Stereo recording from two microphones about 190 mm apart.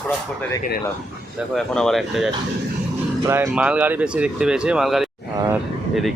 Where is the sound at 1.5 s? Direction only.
5° left (ahead or behind).